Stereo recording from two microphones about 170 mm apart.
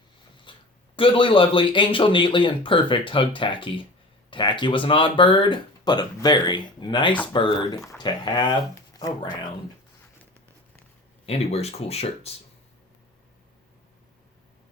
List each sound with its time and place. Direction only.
0.5 s a sound: 30° left (ahead or behind)
0.9 s speech: 30° left (ahead or behind)
11.3 s speech: 35° left (ahead or behind)